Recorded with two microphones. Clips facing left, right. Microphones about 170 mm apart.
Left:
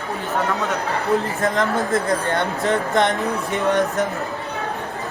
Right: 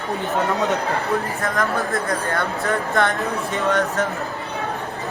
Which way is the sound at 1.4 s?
20° left (ahead or behind).